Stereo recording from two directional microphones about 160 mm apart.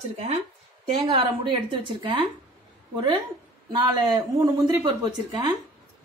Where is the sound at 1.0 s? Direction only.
35° right (ahead or behind).